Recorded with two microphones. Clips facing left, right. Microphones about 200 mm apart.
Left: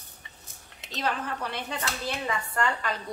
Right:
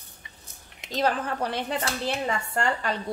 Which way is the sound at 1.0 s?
35° right (ahead or behind).